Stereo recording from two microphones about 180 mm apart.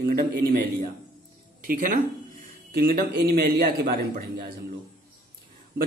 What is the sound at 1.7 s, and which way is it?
Speech, 45° right (ahead or behind).